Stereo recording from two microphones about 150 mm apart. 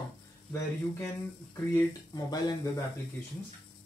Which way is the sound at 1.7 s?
25° left (ahead or behind).